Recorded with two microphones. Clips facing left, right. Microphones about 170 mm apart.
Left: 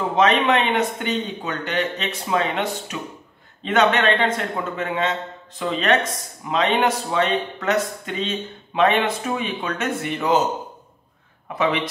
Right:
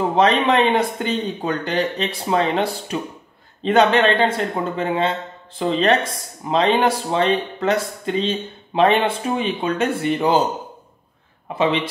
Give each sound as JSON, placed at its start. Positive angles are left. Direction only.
{"t": 0.1, "sound": "speech", "side_deg": -35}
{"t": 11.4, "sound": "speech", "side_deg": -25}